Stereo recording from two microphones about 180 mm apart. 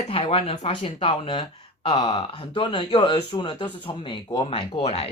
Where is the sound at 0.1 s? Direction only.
30° left (ahead or behind).